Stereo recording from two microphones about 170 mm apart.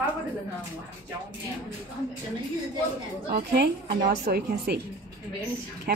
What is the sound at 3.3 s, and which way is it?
A woman's voice, 60° right (ahead or behind).